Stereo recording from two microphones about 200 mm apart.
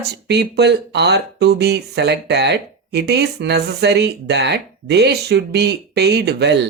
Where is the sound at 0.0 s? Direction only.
55° right (ahead or behind).